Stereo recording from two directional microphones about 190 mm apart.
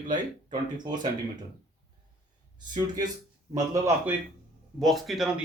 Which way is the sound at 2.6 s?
20° right (ahead or behind).